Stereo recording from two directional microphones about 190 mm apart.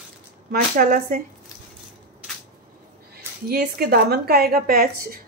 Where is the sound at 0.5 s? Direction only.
45° right (ahead or behind).